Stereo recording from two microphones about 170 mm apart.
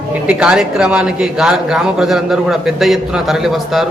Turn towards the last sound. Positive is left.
turn(degrees=0)  # may be behind; listen again after turning